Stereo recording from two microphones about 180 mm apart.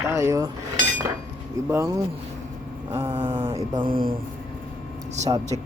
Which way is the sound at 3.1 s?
30° right (ahead or behind).